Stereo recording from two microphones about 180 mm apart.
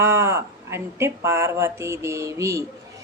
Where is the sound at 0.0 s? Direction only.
15° right (ahead or behind).